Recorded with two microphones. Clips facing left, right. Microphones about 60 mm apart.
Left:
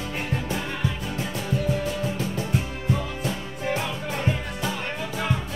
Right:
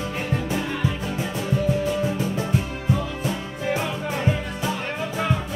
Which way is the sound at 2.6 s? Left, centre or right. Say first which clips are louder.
Right 2 dB; right.